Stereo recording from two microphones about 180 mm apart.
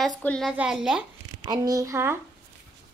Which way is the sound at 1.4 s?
20° right (ahead or behind).